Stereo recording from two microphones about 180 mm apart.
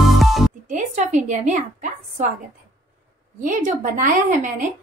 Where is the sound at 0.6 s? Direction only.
40° right (ahead or behind).